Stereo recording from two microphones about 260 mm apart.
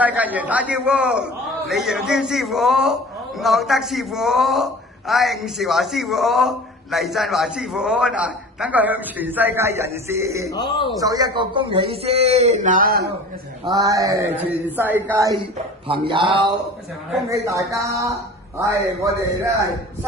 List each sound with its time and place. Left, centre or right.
0.0 s a man's voice: centre
10.5 s a man's voice: centre
11.0 s speech: centre; by 13.1 s right
13.7 s speech: centre